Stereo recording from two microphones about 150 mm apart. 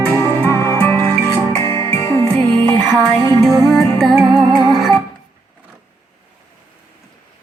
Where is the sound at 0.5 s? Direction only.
20° left (ahead or behind).